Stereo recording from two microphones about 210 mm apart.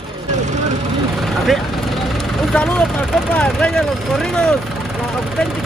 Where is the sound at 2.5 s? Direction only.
5° left (ahead or behind).